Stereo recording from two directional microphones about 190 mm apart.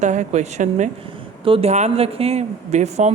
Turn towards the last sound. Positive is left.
turn(degrees=-35)  # may be behind; listen again after turning